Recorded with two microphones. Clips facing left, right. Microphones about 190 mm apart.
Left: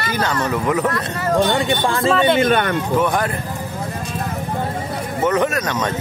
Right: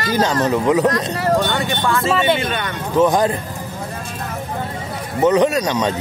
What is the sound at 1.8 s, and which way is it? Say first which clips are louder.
Speech: even; 30° left (ahead or behind).